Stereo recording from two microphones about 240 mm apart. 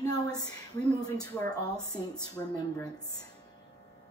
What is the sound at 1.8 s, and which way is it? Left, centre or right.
Speech, centre.